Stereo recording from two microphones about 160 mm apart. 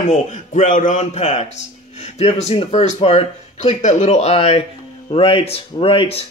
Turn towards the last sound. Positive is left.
turn(degrees=35)  # may be behind; listen again after turning